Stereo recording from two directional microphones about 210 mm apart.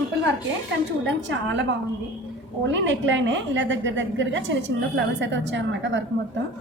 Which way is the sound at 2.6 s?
60° right (ahead or behind).